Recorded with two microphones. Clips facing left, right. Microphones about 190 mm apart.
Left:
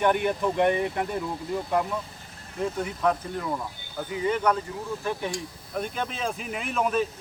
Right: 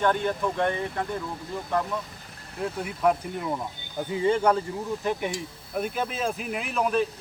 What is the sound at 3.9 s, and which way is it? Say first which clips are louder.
Speech: right 3 dB; 30° right (ahead or behind).